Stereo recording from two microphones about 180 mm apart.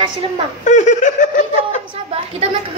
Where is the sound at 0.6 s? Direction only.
40° left (ahead or behind).